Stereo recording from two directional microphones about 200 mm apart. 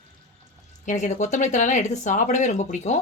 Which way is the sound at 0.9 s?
35° left (ahead or behind).